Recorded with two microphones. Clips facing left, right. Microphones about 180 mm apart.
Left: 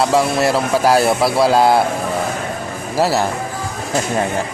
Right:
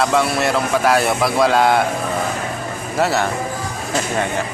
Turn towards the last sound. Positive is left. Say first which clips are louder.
# left 2 dB
turn(degrees=35)  # may be behind; listen again after turning